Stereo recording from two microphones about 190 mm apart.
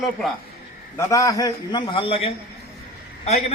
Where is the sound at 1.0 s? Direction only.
15° left (ahead or behind).